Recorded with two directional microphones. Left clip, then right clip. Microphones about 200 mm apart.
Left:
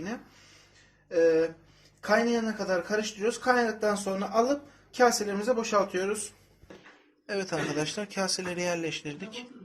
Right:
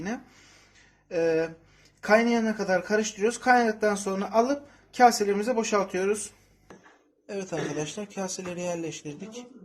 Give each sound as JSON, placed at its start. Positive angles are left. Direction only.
{"t": 1.1, "sound": "speech", "side_deg": -40}
{"t": 7.3, "sound": "speech", "side_deg": -5}